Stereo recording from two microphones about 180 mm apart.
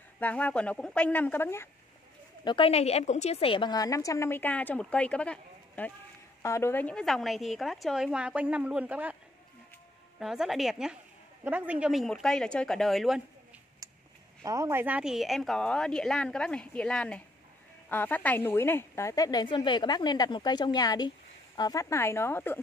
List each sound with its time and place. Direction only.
0.2 s speech: 10° left (ahead or behind)
2.4 s a woman's voice: 30° left (ahead or behind); by 9.1 s 10° right (ahead or behind)
10.1 s speech: 5° right (ahead or behind)
13.8 s a sound: 20° right (ahead or behind)
14.4 s a woman's voice: 20° right (ahead or behind); by 22.6 s 10° left (ahead or behind)